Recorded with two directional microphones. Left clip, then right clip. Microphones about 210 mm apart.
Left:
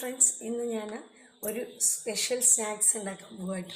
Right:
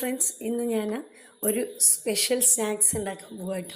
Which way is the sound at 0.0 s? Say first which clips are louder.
Right 1 dB; 35° right (ahead or behind).